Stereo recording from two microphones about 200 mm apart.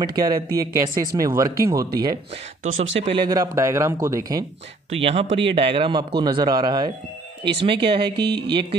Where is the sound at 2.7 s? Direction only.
75° right (ahead or behind).